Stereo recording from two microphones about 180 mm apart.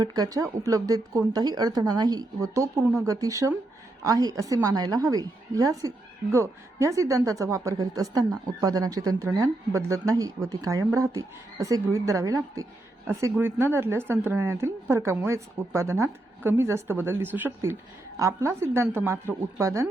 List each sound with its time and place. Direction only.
0.0 s a woman's voice: 20° right (ahead or behind)